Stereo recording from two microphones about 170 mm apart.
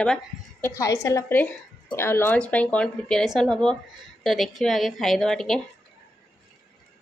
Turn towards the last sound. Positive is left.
turn(degrees=0)  # may be behind; listen again after turning